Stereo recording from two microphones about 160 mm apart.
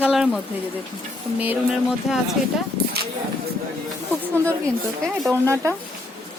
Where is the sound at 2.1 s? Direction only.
5° right (ahead or behind).